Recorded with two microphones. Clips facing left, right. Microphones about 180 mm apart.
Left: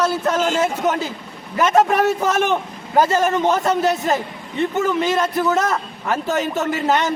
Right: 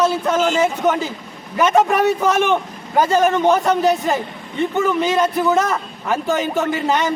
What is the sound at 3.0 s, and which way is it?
A man's voice, 5° left (ahead or behind).